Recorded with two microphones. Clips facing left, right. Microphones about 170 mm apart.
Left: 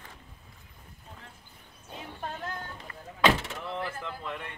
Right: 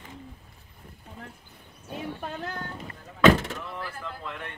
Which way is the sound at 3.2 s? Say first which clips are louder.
Right 7 dB; 50° right (ahead or behind).